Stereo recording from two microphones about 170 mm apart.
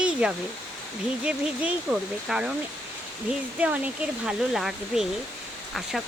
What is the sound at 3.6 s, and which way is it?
Speech, 10° right (ahead or behind).